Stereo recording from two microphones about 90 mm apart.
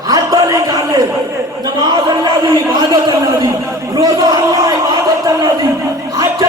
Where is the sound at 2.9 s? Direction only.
40° right (ahead or behind).